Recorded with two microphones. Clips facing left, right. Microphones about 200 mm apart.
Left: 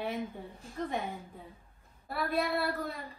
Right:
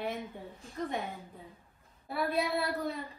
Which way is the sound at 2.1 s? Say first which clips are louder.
Even; centre (ahead or behind).